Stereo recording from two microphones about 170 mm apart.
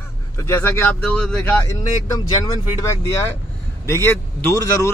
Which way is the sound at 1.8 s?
20° left (ahead or behind).